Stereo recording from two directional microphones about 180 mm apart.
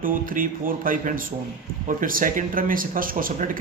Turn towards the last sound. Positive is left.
turn(degrees=-50)  # may be behind; listen again after turning